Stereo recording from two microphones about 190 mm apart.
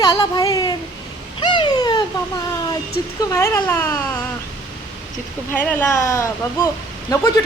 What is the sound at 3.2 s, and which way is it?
Speech, 15° left (ahead or behind).